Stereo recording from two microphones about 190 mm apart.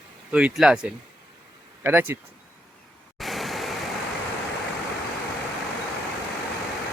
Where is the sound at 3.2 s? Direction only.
Centre (ahead or behind).